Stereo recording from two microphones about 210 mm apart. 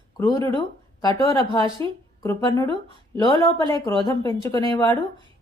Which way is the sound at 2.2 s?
15° left (ahead or behind).